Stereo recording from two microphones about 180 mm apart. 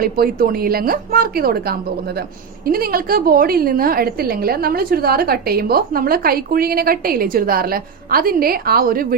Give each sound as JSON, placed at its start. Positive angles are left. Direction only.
{"t": 0.0, "sound": "a woman's voice", "side_deg": -55}